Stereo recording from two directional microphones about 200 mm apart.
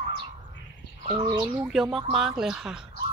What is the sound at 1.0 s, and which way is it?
Speech, 25° right (ahead or behind).